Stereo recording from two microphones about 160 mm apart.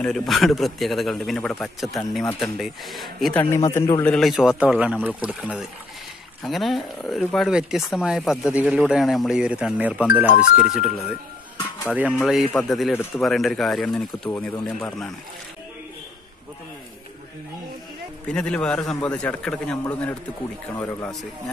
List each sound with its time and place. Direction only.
0.0 s speech: 5° left (ahead or behind)
3.3 s a man's voice: 15° left (ahead or behind)
4.1 s speech: centre (ahead or behind)
18.3 s a man's voice: 5° left (ahead or behind)